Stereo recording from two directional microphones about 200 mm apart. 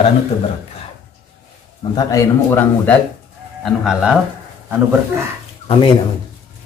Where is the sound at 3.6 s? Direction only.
5° right (ahead or behind).